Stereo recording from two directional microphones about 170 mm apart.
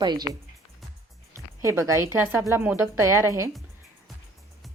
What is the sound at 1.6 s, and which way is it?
A woman's voice, 15° right (ahead or behind).